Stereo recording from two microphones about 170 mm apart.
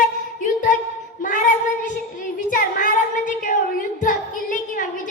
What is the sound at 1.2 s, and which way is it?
Child singing, 50° left (ahead or behind).